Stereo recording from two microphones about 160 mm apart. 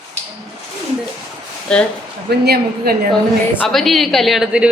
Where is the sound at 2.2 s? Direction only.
85° right.